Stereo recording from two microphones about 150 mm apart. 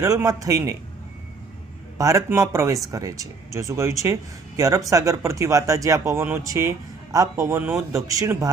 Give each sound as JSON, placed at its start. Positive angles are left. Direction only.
{"t": 0.0, "sound": "speech", "side_deg": -20}
{"t": 2.0, "sound": "speech", "side_deg": -20}
{"t": 7.9, "sound": "speech", "side_deg": -20}